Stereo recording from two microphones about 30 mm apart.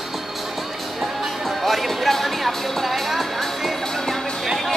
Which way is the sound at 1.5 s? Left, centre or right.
Centre.